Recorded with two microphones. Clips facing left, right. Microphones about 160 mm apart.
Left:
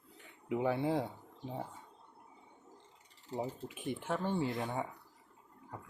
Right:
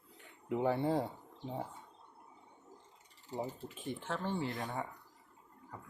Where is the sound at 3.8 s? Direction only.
10° left (ahead or behind).